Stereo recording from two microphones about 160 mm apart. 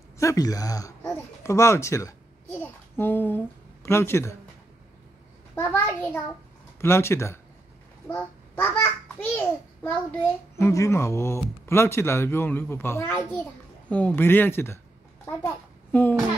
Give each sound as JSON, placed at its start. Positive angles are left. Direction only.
{"t": 0.2, "sound": "a child's voice", "side_deg": 20}
{"t": 5.6, "sound": "speech", "side_deg": 15}
{"t": 8.1, "sound": "a sound", "side_deg": 10}
{"t": 10.6, "sound": "a child's voice", "side_deg": 20}